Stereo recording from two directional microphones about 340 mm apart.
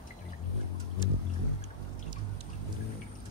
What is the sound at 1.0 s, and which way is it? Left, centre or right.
Vehicle, centre.